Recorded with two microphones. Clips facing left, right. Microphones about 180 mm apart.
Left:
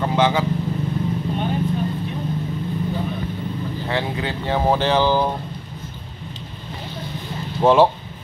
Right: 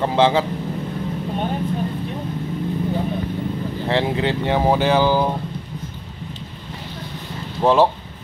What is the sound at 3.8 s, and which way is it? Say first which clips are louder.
Speech: right 5 dB; 25° right (ahead or behind).